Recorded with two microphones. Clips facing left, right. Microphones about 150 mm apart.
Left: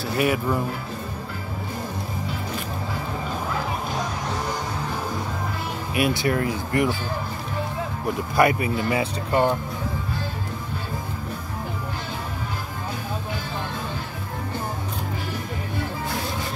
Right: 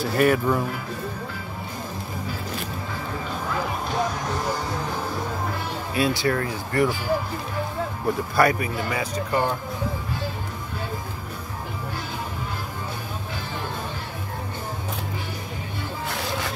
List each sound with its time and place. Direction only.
0.0 s speech: 10° left (ahead or behind)
5.9 s speech: 20° left (ahead or behind)
8.4 s speech: 25° left (ahead or behind)